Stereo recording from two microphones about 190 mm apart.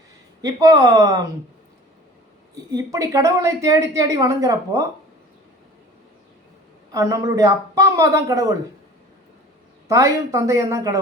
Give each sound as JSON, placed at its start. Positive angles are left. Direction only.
{"t": 0.4, "sound": "speech", "side_deg": -15}
{"t": 2.7, "sound": "speech", "side_deg": -15}
{"t": 6.9, "sound": "speech", "side_deg": -15}
{"t": 9.9, "sound": "speech", "side_deg": -15}